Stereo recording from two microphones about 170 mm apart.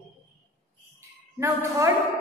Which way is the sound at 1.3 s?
20° right (ahead or behind).